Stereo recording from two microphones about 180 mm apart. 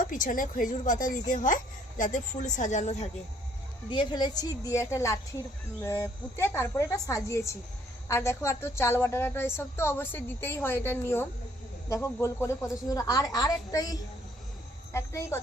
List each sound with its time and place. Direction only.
0.0 s a woman's voice: 45° left (ahead or behind)
3.8 s a woman's voice: 25° left (ahead or behind)